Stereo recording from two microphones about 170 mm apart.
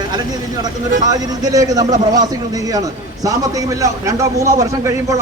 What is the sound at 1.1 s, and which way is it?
A man's voice, 20° right (ahead or behind).